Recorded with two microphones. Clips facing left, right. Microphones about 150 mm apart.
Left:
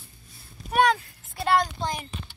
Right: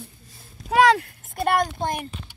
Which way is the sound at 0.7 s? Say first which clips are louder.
Right 4 dB; 90° right.